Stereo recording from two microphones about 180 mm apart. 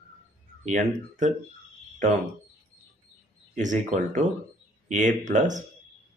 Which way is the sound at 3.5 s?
45° right (ahead or behind).